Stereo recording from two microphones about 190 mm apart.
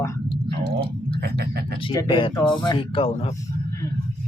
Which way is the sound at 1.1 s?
55° right (ahead or behind).